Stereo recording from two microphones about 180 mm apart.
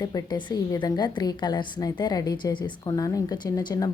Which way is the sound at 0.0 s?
20° left (ahead or behind).